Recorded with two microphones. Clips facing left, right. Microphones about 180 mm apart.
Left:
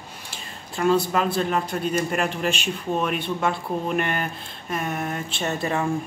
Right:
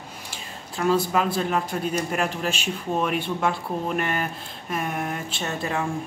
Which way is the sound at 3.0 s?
10° right (ahead or behind).